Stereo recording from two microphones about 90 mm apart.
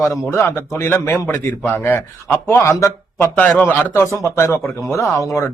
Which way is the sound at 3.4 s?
15° left (ahead or behind).